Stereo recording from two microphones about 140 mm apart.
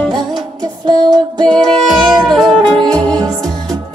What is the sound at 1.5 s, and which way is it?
Music, 5° left (ahead or behind).